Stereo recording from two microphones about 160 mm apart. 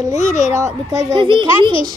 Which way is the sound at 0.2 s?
50° left (ahead or behind).